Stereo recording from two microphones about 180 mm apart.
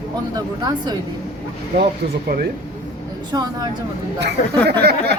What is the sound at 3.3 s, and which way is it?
Speech, 25° right (ahead or behind).